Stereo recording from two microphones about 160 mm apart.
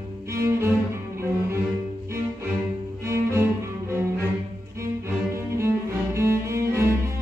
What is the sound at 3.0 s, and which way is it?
Cello, 15° right (ahead or behind).